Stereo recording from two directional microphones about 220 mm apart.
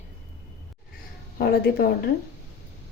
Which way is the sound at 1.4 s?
45° left (ahead or behind).